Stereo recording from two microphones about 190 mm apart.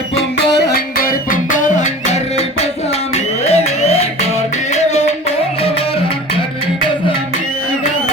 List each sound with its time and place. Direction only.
0.5 s music: 60° left (ahead or behind); by 2.1 s 40° left (ahead or behind)
3.4 s a sound: 35° left (ahead or behind)
4.7 s music: 35° left (ahead or behind)